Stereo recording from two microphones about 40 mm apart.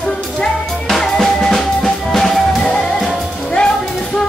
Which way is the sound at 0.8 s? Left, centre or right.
Centre.